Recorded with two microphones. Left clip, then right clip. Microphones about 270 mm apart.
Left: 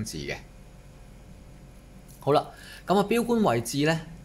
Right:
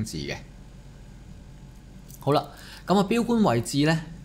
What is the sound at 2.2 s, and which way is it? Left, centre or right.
Speech, centre.